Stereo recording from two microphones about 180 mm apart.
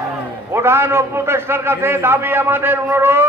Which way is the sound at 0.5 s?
15° right (ahead or behind).